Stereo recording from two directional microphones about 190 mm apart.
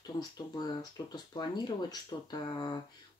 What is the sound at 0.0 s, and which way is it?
Speech, 20° left (ahead or behind).